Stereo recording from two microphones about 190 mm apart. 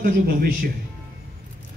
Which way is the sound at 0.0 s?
50° right (ahead or behind).